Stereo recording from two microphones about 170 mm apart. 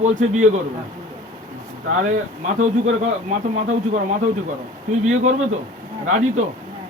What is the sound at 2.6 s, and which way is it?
Speech, 45° right (ahead or behind).